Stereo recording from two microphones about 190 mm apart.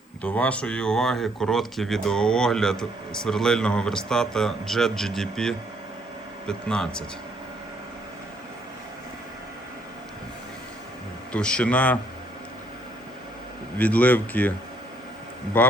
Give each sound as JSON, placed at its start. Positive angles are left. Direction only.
{"t": 0.2, "sound": "speech", "side_deg": 5}
{"t": 11.3, "sound": "speech", "side_deg": 5}
{"t": 13.7, "sound": "speech", "side_deg": 10}
{"t": 15.6, "sound": "speech", "side_deg": 10}